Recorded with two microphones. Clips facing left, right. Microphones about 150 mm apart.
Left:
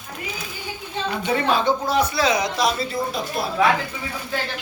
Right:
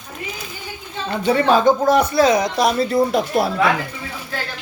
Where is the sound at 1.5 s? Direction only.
45° right (ahead or behind); by 3.5 s 65° right (ahead or behind).